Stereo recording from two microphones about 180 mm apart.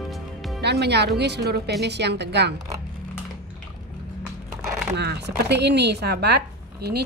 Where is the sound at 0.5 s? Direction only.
65° right (ahead or behind).